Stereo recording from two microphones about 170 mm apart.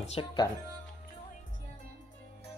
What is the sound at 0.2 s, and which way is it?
Speech, 25° left (ahead or behind).